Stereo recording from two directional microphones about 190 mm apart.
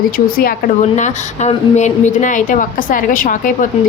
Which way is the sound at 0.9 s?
40° left (ahead or behind).